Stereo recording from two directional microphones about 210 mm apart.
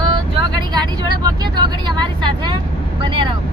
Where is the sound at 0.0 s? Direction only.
20° right (ahead or behind).